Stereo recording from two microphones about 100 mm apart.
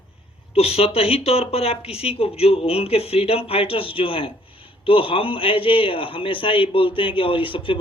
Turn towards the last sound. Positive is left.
turn(degrees=60)  # may be behind; listen again after turning